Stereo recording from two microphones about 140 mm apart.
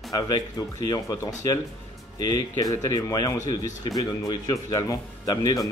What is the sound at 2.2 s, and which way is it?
Speech, 25° left (ahead or behind).